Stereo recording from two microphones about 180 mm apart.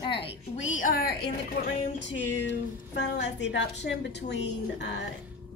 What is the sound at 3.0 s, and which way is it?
A woman's voice, 75° left (ahead or behind).